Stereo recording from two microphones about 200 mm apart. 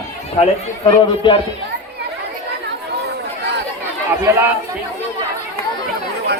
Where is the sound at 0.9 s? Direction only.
25° left (ahead or behind).